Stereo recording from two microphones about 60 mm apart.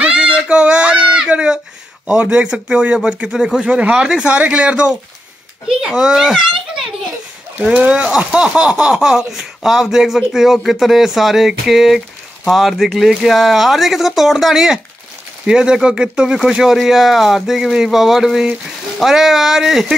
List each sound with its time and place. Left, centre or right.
0.0 s a sound: centre
2.0 s speech: centre
7.7 s speech: right; by 20.0 s centre